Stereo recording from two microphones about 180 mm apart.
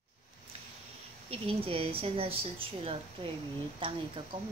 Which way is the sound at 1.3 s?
30° right (ahead or behind).